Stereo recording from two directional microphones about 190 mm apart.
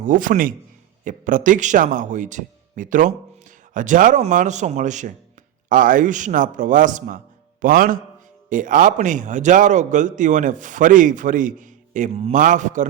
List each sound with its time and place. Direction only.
0.0 s a man's voice: 45° right (ahead or behind)